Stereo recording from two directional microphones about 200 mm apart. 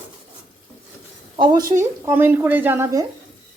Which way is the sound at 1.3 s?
25° right (ahead or behind).